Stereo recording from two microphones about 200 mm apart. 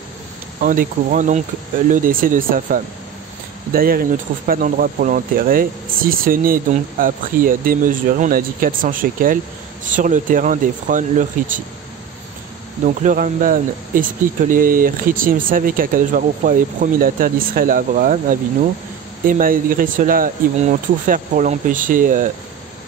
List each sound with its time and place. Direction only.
0.6 s speech: 40° right (ahead or behind)
12.8 s speech: 40° right (ahead or behind)